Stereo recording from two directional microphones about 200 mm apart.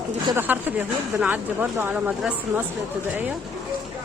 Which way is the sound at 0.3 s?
10° right (ahead or behind).